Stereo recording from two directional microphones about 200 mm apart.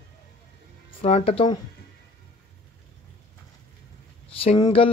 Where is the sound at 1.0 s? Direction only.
30° left (ahead or behind).